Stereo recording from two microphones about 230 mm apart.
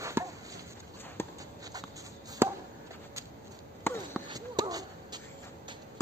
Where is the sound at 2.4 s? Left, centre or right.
Centre.